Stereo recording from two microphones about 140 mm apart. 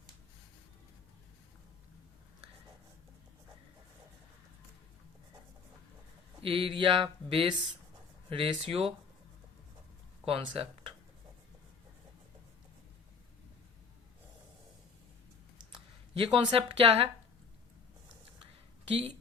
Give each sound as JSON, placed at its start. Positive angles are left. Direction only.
{"t": 6.4, "sound": "speech", "side_deg": -40}
{"t": 10.2, "sound": "speech", "side_deg": -40}
{"t": 16.1, "sound": "speech", "side_deg": -40}
{"t": 18.9, "sound": "speech", "side_deg": -45}